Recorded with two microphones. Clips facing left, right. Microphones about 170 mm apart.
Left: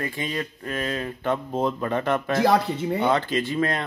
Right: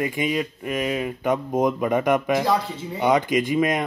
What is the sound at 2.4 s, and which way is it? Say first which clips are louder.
Speech: left 3 dB; 65° left (ahead or behind).